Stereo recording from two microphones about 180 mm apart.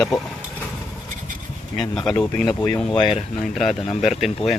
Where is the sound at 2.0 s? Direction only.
5° left (ahead or behind).